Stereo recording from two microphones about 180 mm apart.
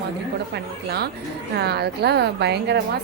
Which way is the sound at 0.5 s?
65° right (ahead or behind).